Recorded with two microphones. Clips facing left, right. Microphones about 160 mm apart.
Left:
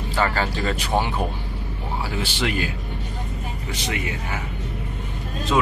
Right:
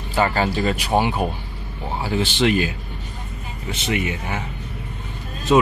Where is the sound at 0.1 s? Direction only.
15° right (ahead or behind).